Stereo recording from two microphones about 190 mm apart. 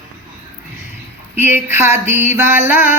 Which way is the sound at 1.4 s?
10° right (ahead or behind).